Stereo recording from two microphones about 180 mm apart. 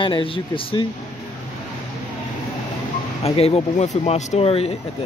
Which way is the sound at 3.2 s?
35° left (ahead or behind).